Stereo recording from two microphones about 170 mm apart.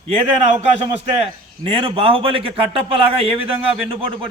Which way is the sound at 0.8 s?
35° right (ahead or behind).